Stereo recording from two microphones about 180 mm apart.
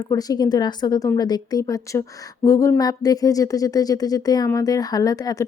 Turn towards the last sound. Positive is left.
turn(degrees=20)  # may be behind; listen again after turning